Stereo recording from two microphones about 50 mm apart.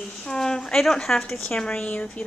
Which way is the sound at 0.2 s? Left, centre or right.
Centre.